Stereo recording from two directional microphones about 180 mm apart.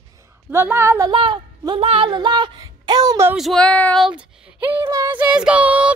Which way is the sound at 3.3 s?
Centre (ahead or behind).